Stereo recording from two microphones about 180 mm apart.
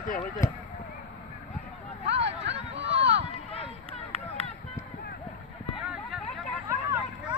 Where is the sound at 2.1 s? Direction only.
75° right (ahead or behind).